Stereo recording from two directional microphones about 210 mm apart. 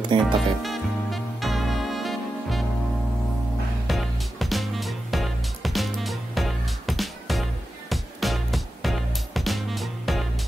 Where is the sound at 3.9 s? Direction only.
Centre (ahead or behind).